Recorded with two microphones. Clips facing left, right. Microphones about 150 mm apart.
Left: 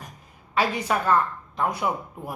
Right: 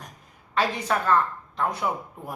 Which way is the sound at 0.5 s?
10° left (ahead or behind).